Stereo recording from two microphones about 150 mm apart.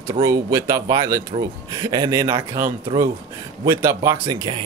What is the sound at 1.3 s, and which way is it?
Speech, 40° right (ahead or behind).